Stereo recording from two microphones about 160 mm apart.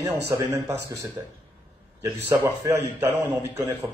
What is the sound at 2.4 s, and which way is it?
Speech, 15° right (ahead or behind).